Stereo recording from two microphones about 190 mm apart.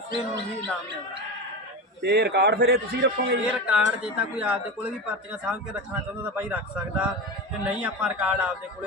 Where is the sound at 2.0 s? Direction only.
60° right (ahead or behind).